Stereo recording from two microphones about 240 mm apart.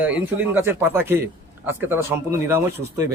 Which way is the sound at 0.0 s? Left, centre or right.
Centre.